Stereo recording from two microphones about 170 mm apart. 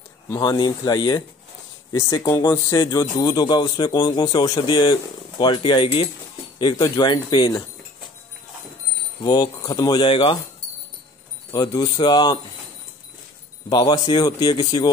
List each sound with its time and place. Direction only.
0.4 s speech: 25° left (ahead or behind)
9.2 s speech: 25° left (ahead or behind)
11.5 s speech: 25° left (ahead or behind)
13.7 s speech: 25° left (ahead or behind)